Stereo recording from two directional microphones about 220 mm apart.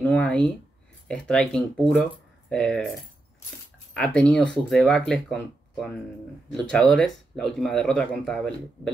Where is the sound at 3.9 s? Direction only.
5° left (ahead or behind).